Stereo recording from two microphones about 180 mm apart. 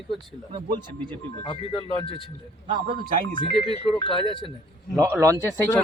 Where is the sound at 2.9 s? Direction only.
50° right (ahead or behind).